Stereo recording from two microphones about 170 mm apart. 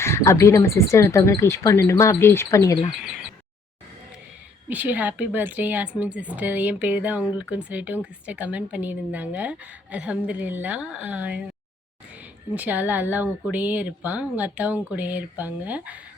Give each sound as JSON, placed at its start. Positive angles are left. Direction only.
{"t": 0.0, "sound": "speech", "side_deg": 15}
{"t": 4.7, "sound": "speech", "side_deg": -10}
{"t": 12.5, "sound": "speech", "side_deg": -10}